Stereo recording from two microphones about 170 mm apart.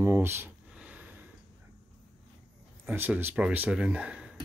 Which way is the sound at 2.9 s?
10° right (ahead or behind).